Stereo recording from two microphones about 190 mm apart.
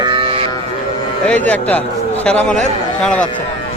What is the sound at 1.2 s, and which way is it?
Speech, 5° left (ahead or behind).